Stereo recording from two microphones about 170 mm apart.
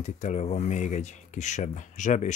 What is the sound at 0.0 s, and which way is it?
Speech, 45° left (ahead or behind).